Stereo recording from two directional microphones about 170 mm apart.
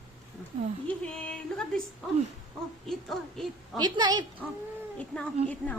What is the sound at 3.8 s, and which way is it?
Speech, 25° right (ahead or behind).